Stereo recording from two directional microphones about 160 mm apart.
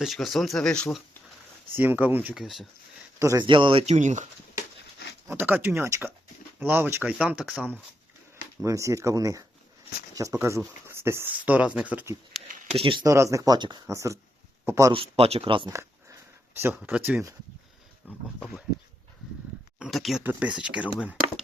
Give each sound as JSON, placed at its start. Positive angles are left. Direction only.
{"t": 0.0, "sound": "speech", "side_deg": 0}
{"t": 1.7, "sound": "speech", "side_deg": -10}
{"t": 3.2, "sound": "speech", "side_deg": -20}
{"t": 3.4, "sound": "speech", "side_deg": -30}
{"t": 5.3, "sound": "speech", "side_deg": -10}
{"t": 8.6, "sound": "speech", "side_deg": -20}
{"t": 12.7, "sound": "speech", "side_deg": -30}
{"t": 13.1, "sound": "speech", "side_deg": -20}
{"t": 14.9, "sound": "speech", "side_deg": -35}
{"t": 15.7, "sound": "a sound", "side_deg": -20}
{"t": 16.6, "sound": "speech", "side_deg": -15}
{"t": 18.3, "sound": "speech", "side_deg": 0}
{"t": 19.8, "sound": "speech", "side_deg": 0}